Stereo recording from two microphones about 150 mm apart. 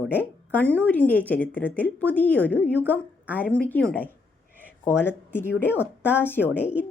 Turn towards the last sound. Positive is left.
turn(degrees=15)  # may be behind; listen again after turning